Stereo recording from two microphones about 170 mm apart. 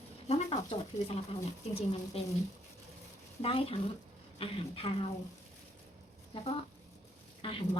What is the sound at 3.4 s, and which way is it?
Speech, 35° left (ahead or behind).